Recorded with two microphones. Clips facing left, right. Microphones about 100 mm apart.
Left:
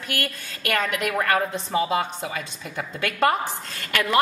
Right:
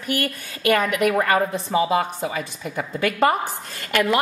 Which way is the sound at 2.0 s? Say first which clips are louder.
Right 3 dB; 5° right (ahead or behind).